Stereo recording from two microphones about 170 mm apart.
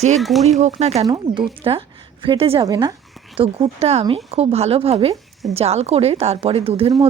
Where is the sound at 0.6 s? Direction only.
40° right (ahead or behind).